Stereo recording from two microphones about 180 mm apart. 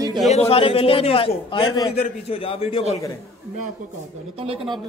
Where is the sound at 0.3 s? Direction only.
35° left (ahead or behind).